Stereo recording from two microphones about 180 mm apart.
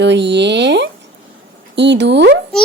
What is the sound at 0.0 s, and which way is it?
Speech, 75° right (ahead or behind).